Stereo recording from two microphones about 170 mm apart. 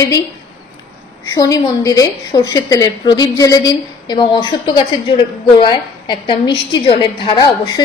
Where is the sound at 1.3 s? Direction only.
20° left (ahead or behind).